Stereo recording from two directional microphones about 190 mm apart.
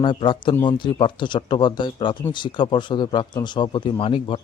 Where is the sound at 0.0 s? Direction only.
25° left (ahead or behind).